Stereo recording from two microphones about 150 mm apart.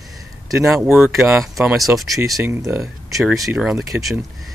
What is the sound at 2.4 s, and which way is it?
Speech, 15° right (ahead or behind).